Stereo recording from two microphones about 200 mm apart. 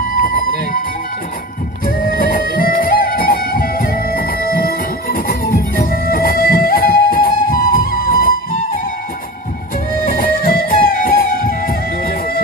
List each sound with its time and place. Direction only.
2.0 s music: 45° left (ahead or behind)
10.2 s music: 45° left (ahead or behind)